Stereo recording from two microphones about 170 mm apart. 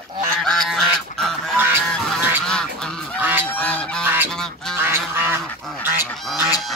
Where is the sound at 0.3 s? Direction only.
5° left (ahead or behind).